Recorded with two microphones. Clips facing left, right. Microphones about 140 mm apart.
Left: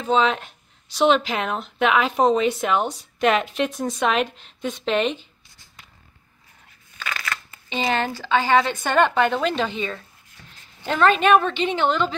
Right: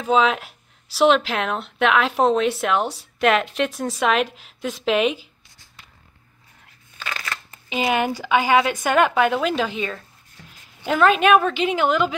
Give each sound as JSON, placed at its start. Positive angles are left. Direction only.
{"t": 0.0, "sound": "speech", "side_deg": -5}
{"t": 7.2, "sound": "a sound", "side_deg": -30}
{"t": 7.7, "sound": "a woman's voice", "side_deg": -10}